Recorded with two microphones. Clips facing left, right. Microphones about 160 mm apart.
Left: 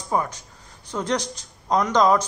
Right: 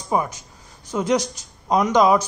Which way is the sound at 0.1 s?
10° right (ahead or behind).